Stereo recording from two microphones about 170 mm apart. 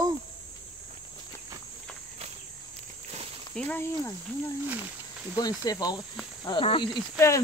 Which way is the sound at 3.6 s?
10° left (ahead or behind).